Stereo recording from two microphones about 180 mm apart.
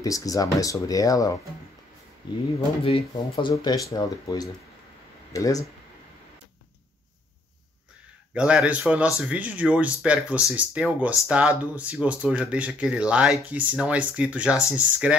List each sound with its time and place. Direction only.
0.0 s speech: 20° left (ahead or behind)
2.8 s speech: 30° left (ahead or behind)
3.5 s speech: 20° left (ahead or behind)
8.4 s speech: 5° right (ahead or behind)